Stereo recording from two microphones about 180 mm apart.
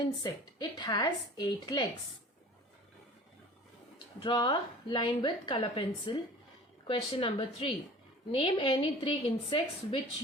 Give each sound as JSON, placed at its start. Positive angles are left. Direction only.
{"t": 0.2, "sound": "a woman's voice", "side_deg": 20}
{"t": 3.9, "sound": "a woman's voice", "side_deg": 25}